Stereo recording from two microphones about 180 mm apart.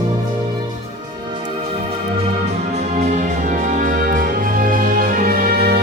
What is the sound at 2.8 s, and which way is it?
Music, 40° right (ahead or behind).